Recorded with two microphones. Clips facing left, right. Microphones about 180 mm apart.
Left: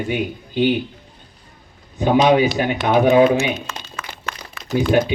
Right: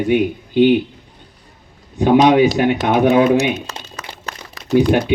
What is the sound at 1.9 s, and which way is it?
Speech, 70° right (ahead or behind).